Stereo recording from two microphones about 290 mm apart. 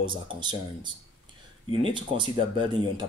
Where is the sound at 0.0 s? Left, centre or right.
Centre.